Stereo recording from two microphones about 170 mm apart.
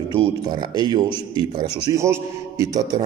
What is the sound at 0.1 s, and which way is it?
Speech, 25° right (ahead or behind).